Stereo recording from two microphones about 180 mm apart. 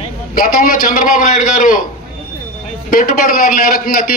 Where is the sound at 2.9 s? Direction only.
50° left (ahead or behind).